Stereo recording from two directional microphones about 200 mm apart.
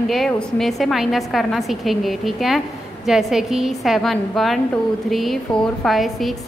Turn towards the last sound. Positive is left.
turn(degrees=0)  # may be behind; listen again after turning